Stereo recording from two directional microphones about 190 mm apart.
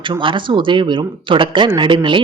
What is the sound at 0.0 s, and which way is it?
Speech, 25° right (ahead or behind).